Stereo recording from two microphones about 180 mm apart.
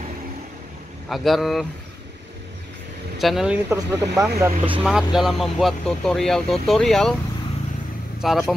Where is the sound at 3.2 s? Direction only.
Centre (ahead or behind); by 4.2 s 20° right (ahead or behind).